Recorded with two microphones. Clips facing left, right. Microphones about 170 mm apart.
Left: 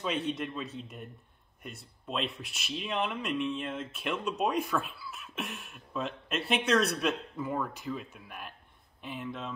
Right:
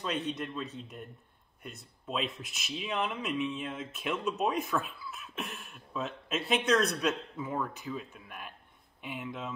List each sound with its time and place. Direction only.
0.0 s speech: centre (ahead or behind)
9.0 s speech: 10° right (ahead or behind)